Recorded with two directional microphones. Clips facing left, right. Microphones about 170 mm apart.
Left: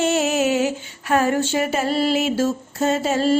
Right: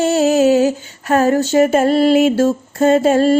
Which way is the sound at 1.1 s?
40° right (ahead or behind).